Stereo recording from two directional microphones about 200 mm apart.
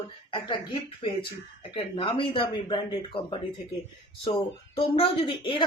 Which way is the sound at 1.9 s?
25° left (ahead or behind).